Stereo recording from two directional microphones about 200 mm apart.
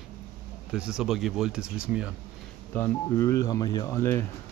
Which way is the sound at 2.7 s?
15° left (ahead or behind).